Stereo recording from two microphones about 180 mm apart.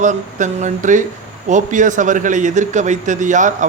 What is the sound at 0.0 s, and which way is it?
A man's voice, 45° right (ahead or behind).